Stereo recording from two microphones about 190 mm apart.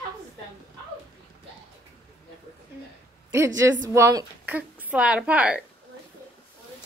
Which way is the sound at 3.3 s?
15° right (ahead or behind).